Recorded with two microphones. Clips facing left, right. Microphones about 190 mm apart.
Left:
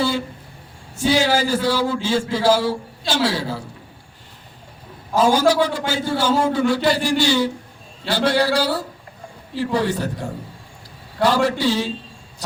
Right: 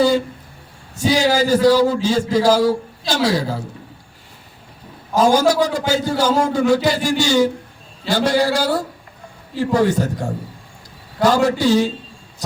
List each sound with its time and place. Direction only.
0.9 s a man's voice: 40° right (ahead or behind)
5.1 s a man's voice: 45° right (ahead or behind)